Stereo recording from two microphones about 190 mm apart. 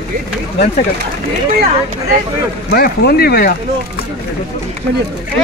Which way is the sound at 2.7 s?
55° left (ahead or behind).